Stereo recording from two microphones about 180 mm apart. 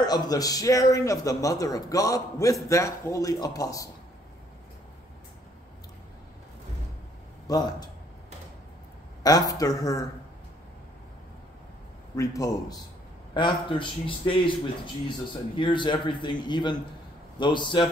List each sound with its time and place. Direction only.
0.0 s a man's voice: 20° left (ahead or behind)
7.4 s a man's voice: 20° left (ahead or behind)
9.2 s a man's voice: 20° left (ahead or behind)
12.2 s a man's voice: 20° left (ahead or behind)